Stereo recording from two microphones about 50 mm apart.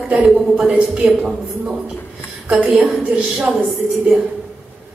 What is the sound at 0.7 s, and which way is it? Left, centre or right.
A woman's voice, right.